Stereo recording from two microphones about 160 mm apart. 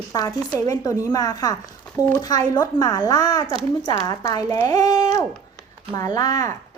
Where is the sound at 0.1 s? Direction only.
25° left (ahead or behind).